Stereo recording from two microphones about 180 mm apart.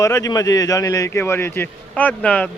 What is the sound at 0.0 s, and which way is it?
A man's voice, 20° left (ahead or behind).